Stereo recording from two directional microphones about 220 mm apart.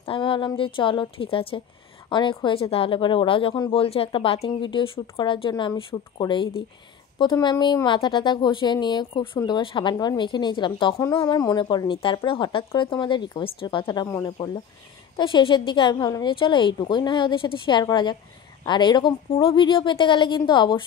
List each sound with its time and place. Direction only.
0.0 s a woman's voice: 25° left (ahead or behind)